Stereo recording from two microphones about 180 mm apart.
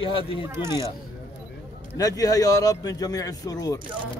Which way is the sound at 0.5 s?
15° right (ahead or behind).